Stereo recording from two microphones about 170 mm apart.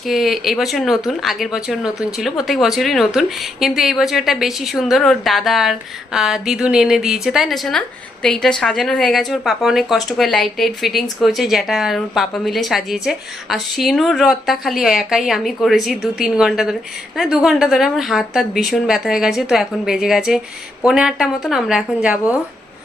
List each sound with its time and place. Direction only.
0.0 s speech: centre (ahead or behind)